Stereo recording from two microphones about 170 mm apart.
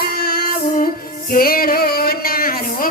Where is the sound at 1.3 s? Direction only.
60° left (ahead or behind).